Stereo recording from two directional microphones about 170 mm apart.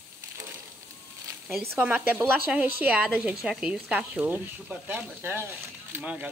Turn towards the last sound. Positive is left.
turn(degrees=-10)  # may be behind; listen again after turning